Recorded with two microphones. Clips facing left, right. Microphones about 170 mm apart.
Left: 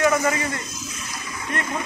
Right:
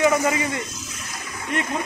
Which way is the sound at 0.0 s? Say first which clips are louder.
Right 1 dB; 15° right (ahead or behind).